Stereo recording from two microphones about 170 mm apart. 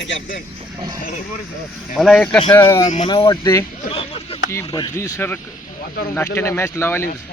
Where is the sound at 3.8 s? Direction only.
35° left (ahead or behind).